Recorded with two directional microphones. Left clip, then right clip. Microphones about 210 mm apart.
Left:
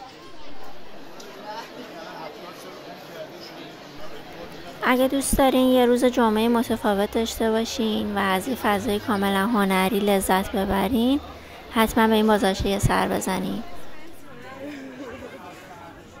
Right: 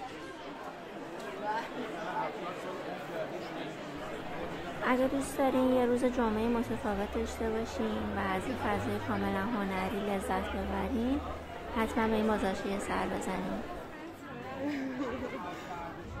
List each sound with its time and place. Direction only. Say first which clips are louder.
4.8 s a woman's voice: left 9 dB; 45° left (ahead or behind)